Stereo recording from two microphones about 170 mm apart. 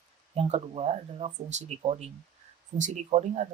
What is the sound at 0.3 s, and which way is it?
Speech, 35° right (ahead or behind).